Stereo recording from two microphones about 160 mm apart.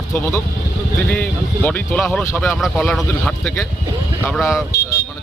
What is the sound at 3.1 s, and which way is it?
Speech, 15° left (ahead or behind).